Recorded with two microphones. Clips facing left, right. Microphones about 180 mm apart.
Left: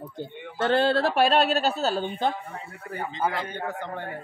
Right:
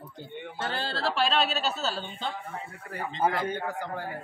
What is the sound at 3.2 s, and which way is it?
Speech, 45° right (ahead or behind).